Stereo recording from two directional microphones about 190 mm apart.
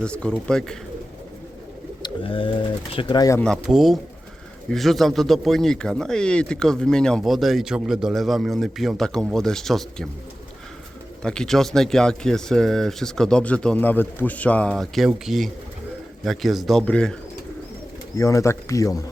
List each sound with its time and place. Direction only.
0.0 s a man's voice: 5° left (ahead or behind)
2.0 s speech: 25° left (ahead or behind)
3.4 s a man's voice: centre (ahead or behind)
11.2 s a man's voice: 5° left (ahead or behind)
18.2 s speech: 15° left (ahead or behind)